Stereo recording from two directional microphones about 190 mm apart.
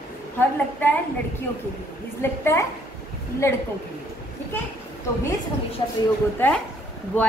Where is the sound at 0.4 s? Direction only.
10° left (ahead or behind).